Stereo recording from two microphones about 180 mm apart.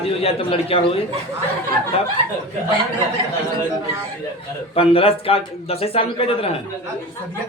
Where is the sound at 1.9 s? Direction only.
30° left (ahead or behind).